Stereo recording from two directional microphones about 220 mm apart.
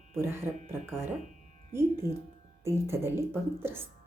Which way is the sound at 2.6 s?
10° right (ahead or behind).